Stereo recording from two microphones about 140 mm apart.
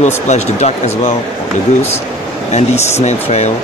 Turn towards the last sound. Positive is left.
turn(degrees=55)  # may be behind; listen again after turning